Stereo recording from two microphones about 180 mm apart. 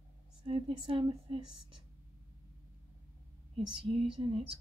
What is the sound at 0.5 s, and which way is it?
Speech, 30° right (ahead or behind).